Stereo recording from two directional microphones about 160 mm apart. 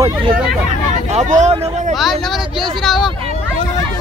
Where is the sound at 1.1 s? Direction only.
45° right (ahead or behind).